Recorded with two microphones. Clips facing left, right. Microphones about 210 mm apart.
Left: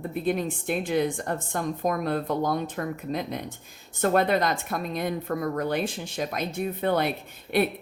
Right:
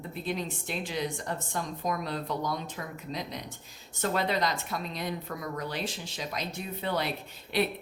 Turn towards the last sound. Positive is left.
turn(degrees=55)  # may be behind; listen again after turning